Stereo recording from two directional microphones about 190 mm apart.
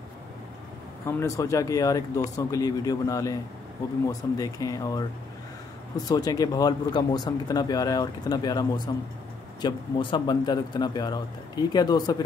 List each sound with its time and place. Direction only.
1.0 s speech: 15° left (ahead or behind)
6.0 s speech: 20° left (ahead or behind)